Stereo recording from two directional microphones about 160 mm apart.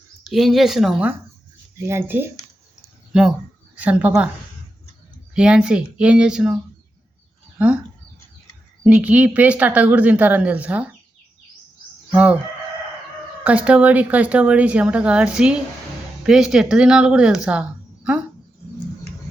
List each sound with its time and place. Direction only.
0.3 s speech: centre (ahead or behind)
1.8 s speech: 15° right (ahead or behind)
3.1 s speech: 5° right (ahead or behind)
5.3 s speech: 5° right (ahead or behind)
7.6 s speech: 5° right (ahead or behind)
8.8 s speech: 5° right (ahead or behind)
12.1 s speech: 10° right (ahead or behind)
13.4 s speech: 10° right (ahead or behind)